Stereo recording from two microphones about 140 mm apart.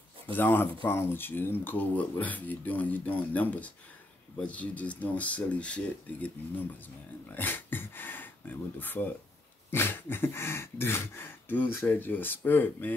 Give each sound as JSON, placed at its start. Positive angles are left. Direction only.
{"t": 0.3, "sound": "speech", "side_deg": 15}
{"t": 7.2, "sound": "a sound", "side_deg": 15}
{"t": 9.7, "sound": "speech", "side_deg": 15}